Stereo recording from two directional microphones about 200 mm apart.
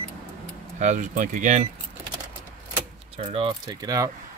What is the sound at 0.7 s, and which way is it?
Speech, 35° right (ahead or behind).